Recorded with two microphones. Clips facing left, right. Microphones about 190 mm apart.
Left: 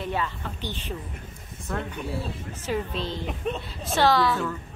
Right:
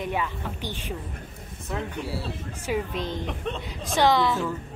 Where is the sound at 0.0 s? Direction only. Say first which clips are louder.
Right 1 dB; 10° right (ahead or behind).